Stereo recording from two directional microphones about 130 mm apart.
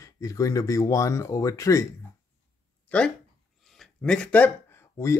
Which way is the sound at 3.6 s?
5° left (ahead or behind).